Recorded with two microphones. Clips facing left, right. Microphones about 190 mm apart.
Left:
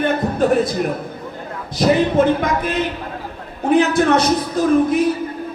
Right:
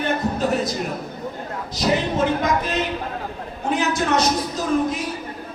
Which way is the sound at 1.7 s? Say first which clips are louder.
Left 7 dB; 55° left (ahead or behind).